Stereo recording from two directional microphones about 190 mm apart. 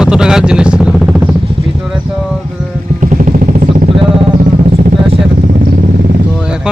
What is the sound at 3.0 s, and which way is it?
Vehicle, 40° right (ahead or behind).